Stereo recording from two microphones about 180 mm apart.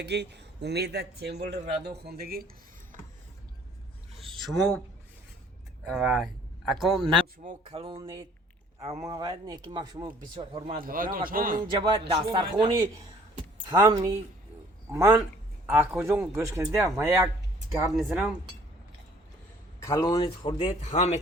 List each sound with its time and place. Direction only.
0.0 s speech: 70° right (ahead or behind)
4.4 s speech: centre (ahead or behind)
5.8 s speech: centre (ahead or behind)
7.4 s speech: 30° right (ahead or behind)
9.0 s speech: 20° right (ahead or behind)
10.8 s a man's voice: 50° right (ahead or behind)
11.7 s a man's voice: 25° right (ahead or behind)
17.9 s speech: 5° right (ahead or behind)
19.8 s a man's voice: 20° left (ahead or behind); by 21.2 s 35° left (ahead or behind)